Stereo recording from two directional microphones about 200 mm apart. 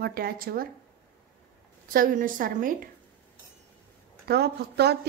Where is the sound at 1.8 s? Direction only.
45° right (ahead or behind).